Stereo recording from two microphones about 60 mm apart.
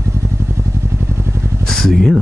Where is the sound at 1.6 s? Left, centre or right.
Centre.